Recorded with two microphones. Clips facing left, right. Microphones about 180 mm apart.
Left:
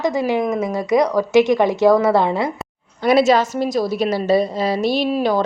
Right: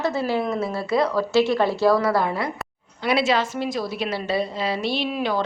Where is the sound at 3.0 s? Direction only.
45° left (ahead or behind).